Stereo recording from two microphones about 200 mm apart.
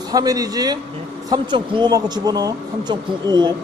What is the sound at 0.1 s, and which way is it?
Speech, 20° right (ahead or behind).